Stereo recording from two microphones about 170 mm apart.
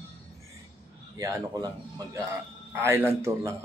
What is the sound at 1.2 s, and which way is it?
Speech, 20° right (ahead or behind).